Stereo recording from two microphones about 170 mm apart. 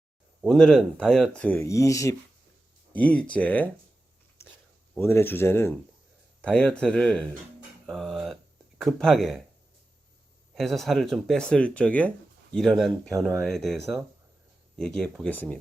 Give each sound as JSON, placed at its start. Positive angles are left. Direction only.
{"t": 0.4, "sound": "speech", "side_deg": 0}
{"t": 4.4, "sound": "a sound", "side_deg": 15}
{"t": 4.9, "sound": "speech", "side_deg": 15}
{"t": 10.5, "sound": "speech", "side_deg": 0}